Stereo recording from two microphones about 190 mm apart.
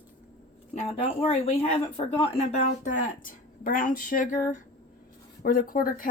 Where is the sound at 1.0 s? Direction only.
30° left (ahead or behind).